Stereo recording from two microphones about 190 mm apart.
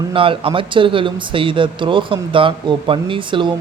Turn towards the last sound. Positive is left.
turn(degrees=-25)  # may be behind; listen again after turning